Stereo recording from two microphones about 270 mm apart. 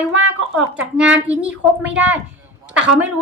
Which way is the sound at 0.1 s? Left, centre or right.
Right.